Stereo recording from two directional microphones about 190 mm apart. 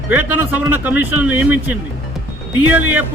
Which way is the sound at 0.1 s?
10° right (ahead or behind).